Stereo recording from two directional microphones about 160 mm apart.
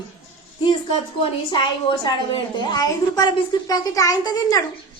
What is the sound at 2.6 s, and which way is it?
A woman's voice, 25° left (ahead or behind).